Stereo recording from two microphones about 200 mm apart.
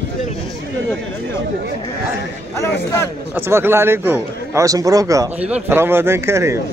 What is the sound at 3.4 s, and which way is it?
A man's voice, 10° right (ahead or behind).